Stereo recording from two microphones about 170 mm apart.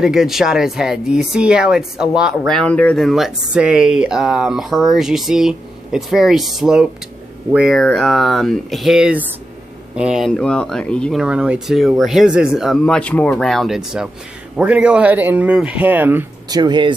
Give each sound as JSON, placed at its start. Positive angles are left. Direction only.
{"t": 0.0, "sound": "speech", "side_deg": 0}
{"t": 16.5, "sound": "speech", "side_deg": -25}